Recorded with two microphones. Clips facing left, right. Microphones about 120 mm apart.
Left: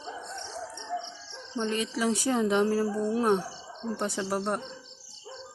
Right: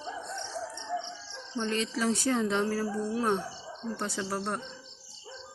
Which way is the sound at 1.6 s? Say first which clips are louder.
Left 1 dB; 10° left (ahead or behind).